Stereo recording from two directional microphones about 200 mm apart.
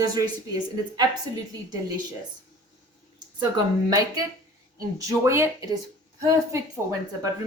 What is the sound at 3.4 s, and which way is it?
A woman's voice, 20° right (ahead or behind).